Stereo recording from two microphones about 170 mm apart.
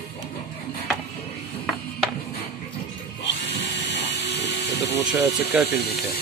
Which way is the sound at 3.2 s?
90° left.